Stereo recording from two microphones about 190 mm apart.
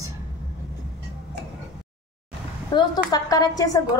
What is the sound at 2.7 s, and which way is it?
A woman's voice, 20° left (ahead or behind).